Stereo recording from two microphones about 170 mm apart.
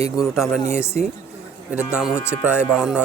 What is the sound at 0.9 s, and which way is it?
Speech, 45° right (ahead or behind).